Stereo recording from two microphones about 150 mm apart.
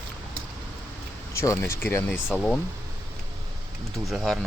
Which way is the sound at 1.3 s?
20° left (ahead or behind).